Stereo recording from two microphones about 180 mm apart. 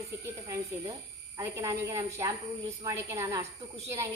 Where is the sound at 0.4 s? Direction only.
15° right (ahead or behind).